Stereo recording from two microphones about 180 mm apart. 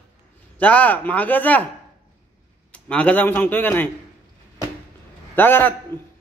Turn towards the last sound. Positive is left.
turn(degrees=10)  # may be behind; listen again after turning